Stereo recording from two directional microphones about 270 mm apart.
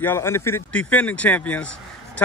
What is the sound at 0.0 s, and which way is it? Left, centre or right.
Speech, centre.